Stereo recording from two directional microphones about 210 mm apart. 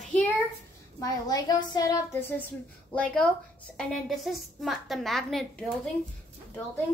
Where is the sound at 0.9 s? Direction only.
15° left (ahead or behind); by 5.4 s centre (ahead or behind).